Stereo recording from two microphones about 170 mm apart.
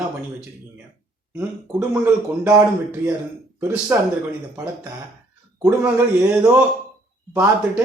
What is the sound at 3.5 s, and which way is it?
Speech, 15° right (ahead or behind).